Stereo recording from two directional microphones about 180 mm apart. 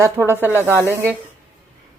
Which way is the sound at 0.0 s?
15° right (ahead or behind).